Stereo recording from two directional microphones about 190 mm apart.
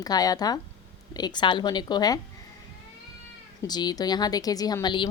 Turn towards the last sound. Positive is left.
turn(degrees=25)  # may be behind; listen again after turning